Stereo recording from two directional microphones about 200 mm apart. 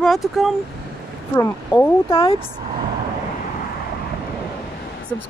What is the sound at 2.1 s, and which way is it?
Speech, 25° left (ahead or behind).